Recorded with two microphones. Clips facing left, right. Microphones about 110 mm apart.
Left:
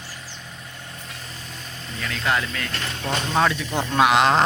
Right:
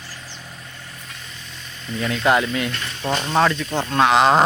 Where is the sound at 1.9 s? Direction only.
25° right (ahead or behind).